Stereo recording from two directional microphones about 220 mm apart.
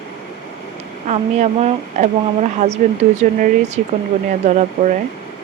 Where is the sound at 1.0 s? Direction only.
30° right (ahead or behind).